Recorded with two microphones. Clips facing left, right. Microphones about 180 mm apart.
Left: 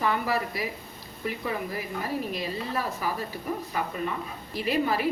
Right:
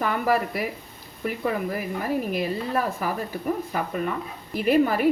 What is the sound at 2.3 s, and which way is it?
Speech, 55° right (ahead or behind).